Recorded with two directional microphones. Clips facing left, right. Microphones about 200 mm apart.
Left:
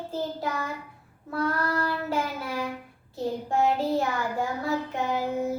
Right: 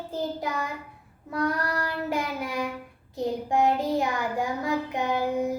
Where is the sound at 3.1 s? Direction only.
15° right (ahead or behind).